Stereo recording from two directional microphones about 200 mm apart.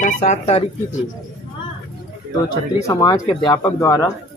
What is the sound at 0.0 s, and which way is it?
Speech, 35° left (ahead or behind).